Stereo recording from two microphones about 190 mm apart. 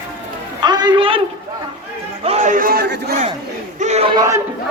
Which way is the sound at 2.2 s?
35° right (ahead or behind).